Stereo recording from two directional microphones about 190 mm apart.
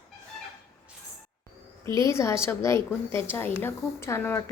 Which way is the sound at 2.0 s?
15° left (ahead or behind).